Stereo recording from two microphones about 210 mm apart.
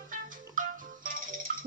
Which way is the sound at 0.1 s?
40° right (ahead or behind).